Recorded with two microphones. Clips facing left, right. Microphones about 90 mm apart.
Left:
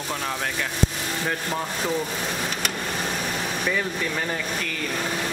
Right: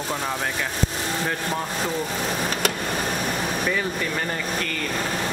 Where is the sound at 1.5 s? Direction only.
Centre (ahead or behind).